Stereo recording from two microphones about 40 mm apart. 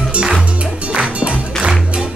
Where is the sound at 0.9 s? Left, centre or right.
Right.